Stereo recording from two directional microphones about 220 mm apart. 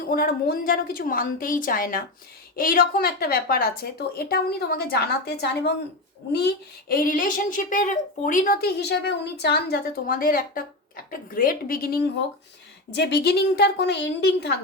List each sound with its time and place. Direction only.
0.1 s a woman's voice: 40° left (ahead or behind)